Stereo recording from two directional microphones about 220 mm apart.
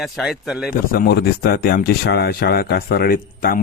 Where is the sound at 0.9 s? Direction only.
45° left (ahead or behind).